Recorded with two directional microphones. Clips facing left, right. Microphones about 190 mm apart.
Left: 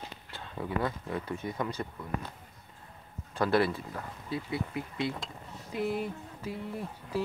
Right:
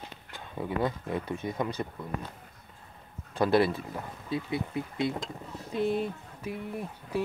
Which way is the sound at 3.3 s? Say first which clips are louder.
Right 3 dB; 20° right (ahead or behind).